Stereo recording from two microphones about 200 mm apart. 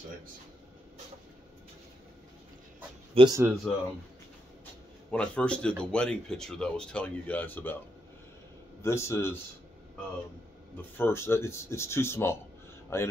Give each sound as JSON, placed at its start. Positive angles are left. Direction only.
{"t": 3.2, "sound": "speech", "side_deg": -20}
{"t": 3.7, "sound": "speech", "side_deg": 5}
{"t": 5.1, "sound": "speech", "side_deg": 5}
{"t": 8.8, "sound": "speech", "side_deg": 15}
{"t": 11.0, "sound": "speech", "side_deg": 10}